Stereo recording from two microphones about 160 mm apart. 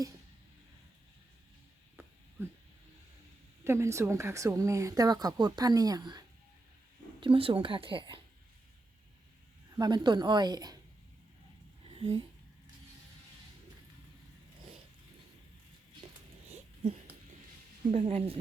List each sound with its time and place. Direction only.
3.6 s speech: 15° right (ahead or behind); by 8.2 s 30° right (ahead or behind)
9.7 s speech: 25° right (ahead or behind)
11.9 s speech: 35° right (ahead or behind)
17.9 s speech: 35° right (ahead or behind)